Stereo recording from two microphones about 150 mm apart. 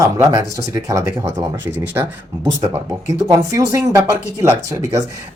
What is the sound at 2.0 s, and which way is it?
Speech, 15° right (ahead or behind).